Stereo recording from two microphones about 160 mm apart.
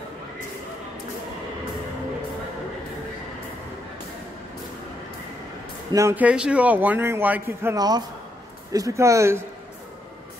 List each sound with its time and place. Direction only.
5.9 s a man's voice: 20° right (ahead or behind)